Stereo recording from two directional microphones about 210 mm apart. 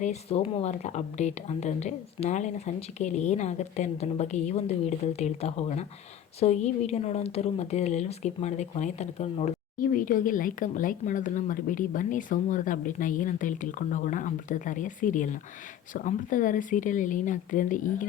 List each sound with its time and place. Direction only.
0.0 s a woman's voice: 30° left (ahead or behind)